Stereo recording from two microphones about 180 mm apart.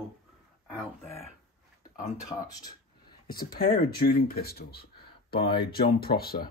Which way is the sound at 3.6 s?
55° left (ahead or behind).